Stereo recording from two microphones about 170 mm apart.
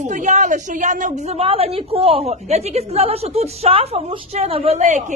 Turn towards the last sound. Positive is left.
turn(degrees=-45)  # may be behind; listen again after turning